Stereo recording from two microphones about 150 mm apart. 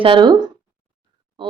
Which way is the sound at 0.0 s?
35° right (ahead or behind).